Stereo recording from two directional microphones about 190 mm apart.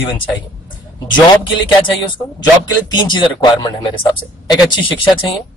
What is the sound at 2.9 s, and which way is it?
A man's voice, 25° left (ahead or behind).